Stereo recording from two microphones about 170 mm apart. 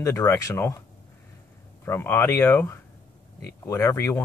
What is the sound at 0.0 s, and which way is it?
Speech, 15° left (ahead or behind).